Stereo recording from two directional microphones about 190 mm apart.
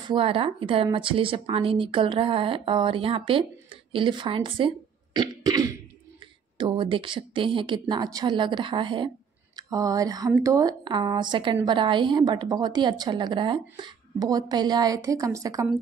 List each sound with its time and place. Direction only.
0.1 s speech: 30° right (ahead or behind)